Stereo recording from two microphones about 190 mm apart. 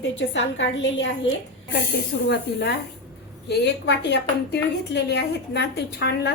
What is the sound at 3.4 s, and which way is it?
A woman's voice, 65° left (ahead or behind).